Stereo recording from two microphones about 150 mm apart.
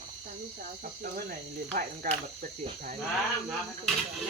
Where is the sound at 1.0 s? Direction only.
70° right (ahead or behind).